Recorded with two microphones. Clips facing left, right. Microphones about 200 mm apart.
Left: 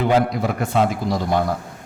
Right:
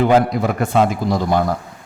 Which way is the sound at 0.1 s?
55° right (ahead or behind).